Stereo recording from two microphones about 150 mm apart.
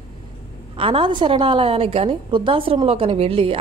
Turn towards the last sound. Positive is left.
turn(degrees=-35)  # may be behind; listen again after turning